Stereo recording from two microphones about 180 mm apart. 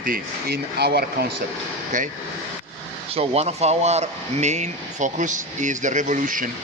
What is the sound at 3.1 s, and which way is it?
Speech, 35° right (ahead or behind).